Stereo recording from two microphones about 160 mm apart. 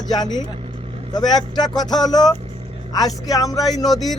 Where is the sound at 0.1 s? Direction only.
25° left (ahead or behind).